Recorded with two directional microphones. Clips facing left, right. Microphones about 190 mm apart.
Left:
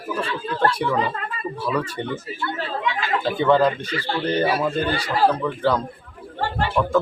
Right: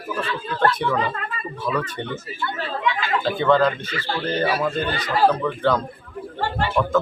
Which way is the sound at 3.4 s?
10° left (ahead or behind).